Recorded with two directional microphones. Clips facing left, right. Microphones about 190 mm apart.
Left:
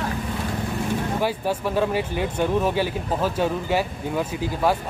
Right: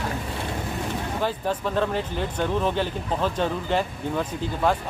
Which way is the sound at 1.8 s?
10° left (ahead or behind).